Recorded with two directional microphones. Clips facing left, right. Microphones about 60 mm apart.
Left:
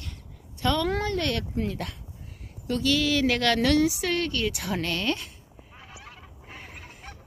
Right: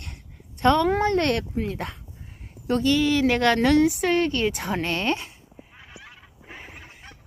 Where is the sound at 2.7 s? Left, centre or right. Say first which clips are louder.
Right 5 dB; right.